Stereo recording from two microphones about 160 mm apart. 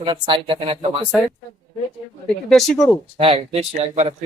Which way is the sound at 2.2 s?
5° left (ahead or behind).